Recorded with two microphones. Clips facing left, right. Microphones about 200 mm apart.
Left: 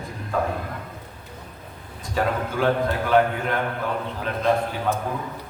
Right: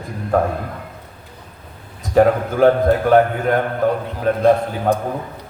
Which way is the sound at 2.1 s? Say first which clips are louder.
Right 10 dB; 45° right (ahead or behind).